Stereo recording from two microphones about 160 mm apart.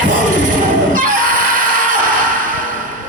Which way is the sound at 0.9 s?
60° right (ahead or behind).